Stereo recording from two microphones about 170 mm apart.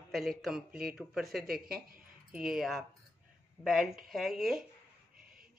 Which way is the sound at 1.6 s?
60° right (ahead or behind).